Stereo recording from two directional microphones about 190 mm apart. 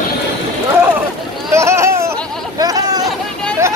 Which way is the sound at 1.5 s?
15° right (ahead or behind).